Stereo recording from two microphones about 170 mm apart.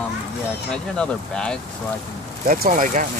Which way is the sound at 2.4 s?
50° right (ahead or behind).